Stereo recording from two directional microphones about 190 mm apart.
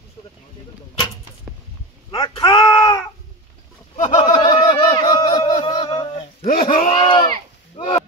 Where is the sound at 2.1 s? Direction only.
25° left (ahead or behind).